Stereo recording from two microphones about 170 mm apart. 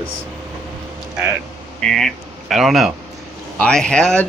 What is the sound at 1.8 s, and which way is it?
Speech, 5° left (ahead or behind).